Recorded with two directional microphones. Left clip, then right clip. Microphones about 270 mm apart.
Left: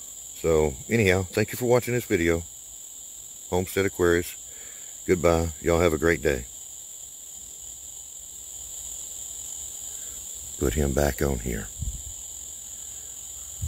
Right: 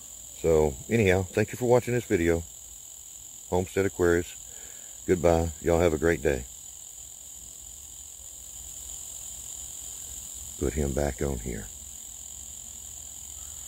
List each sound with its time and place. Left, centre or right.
0.4 s speech: centre
3.4 s speech: centre
10.6 s speech: left